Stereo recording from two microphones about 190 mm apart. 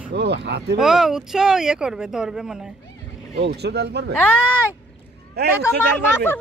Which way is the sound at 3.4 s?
60° right (ahead or behind).